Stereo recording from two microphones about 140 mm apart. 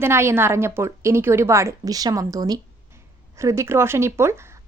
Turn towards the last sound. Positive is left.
turn(degrees=-20)  # may be behind; listen again after turning